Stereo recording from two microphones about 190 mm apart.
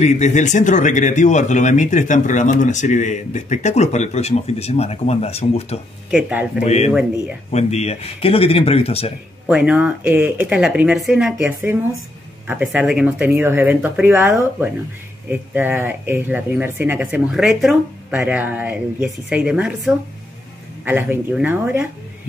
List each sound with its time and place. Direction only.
0.0 s speech: 35° left (ahead or behind)
6.0 s speech: 5° right (ahead or behind)
6.6 s speech: 35° left (ahead or behind)
6.9 s speech: 5° right (ahead or behind)
7.5 s speech: 35° left (ahead or behind)
9.5 s speech: 5° right (ahead or behind)